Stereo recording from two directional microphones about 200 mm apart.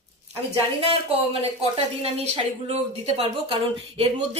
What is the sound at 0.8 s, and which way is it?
A woman's voice, 30° right (ahead or behind).